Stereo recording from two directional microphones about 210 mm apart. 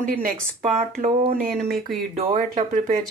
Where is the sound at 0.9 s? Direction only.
40° right (ahead or behind).